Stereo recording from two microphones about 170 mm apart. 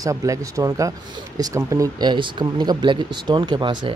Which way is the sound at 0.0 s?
20° right (ahead or behind).